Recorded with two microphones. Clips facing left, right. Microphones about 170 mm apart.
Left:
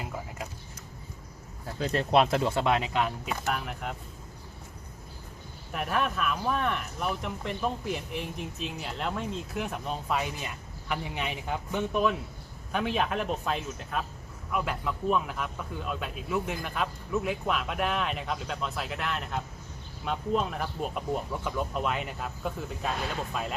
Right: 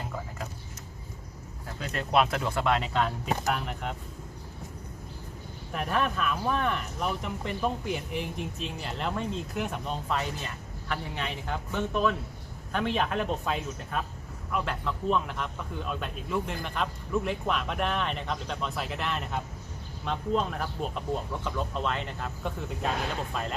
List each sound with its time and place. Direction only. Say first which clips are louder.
1.8 s speech: left 2 dB; 30° left (ahead or behind); by 3.9 s centre (ahead or behind)
5.7 s speech: right 1 dB; centre (ahead or behind)